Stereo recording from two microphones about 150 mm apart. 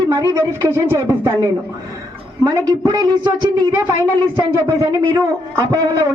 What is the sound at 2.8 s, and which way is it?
A woman's voice, 25° right (ahead or behind).